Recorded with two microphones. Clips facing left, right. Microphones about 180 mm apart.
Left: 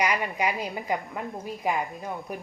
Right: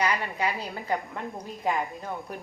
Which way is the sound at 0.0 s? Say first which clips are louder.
Left 1 dB; 15° left (ahead or behind).